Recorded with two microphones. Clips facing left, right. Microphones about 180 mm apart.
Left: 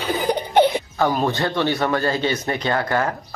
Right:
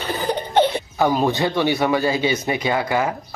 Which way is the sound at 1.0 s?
15° right (ahead or behind).